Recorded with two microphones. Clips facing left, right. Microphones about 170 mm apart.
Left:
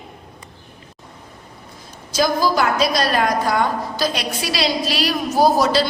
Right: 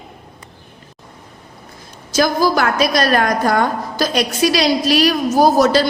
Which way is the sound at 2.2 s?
60° right (ahead or behind).